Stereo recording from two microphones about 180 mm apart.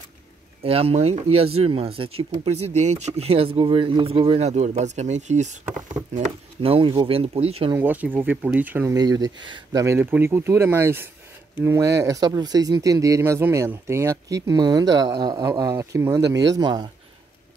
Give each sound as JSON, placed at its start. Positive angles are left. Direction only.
{"t": 0.7, "sound": "speech", "side_deg": -35}
{"t": 7.7, "sound": "speech", "side_deg": -10}
{"t": 8.9, "sound": "speech", "side_deg": -20}